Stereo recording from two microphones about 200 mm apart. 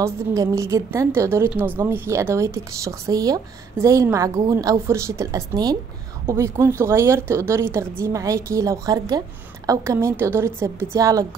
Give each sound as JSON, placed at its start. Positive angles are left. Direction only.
{"t": 0.0, "sound": "a woman's voice", "side_deg": -15}